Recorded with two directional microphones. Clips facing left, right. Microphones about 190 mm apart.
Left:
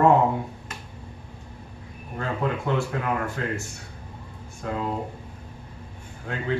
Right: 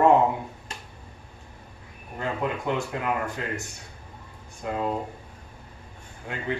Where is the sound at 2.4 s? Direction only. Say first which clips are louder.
Left 3 dB; 15° right (ahead or behind).